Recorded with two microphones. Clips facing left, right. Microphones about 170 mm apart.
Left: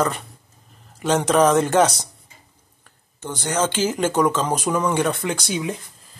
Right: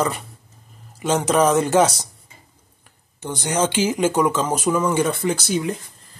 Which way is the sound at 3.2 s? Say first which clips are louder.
Right 1 dB; 15° right (ahead or behind).